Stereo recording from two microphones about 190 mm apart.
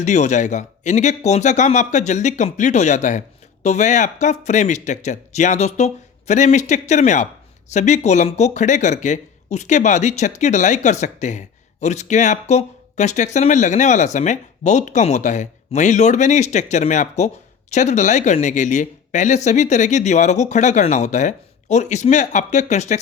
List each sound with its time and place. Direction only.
0.0 s speech: 40° left (ahead or behind)